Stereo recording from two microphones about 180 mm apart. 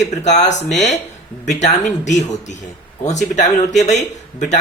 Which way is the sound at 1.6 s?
40° left (ahead or behind).